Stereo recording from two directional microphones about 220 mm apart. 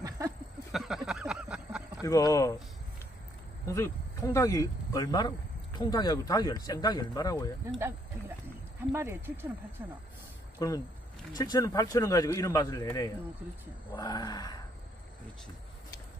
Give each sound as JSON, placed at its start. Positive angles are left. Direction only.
{"t": 0.7, "sound": "a sound", "side_deg": 0}
{"t": 2.0, "sound": "speech", "side_deg": 15}
{"t": 3.6, "sound": "speech", "side_deg": 15}
{"t": 8.9, "sound": "speech", "side_deg": -10}
{"t": 10.6, "sound": "speech", "side_deg": 15}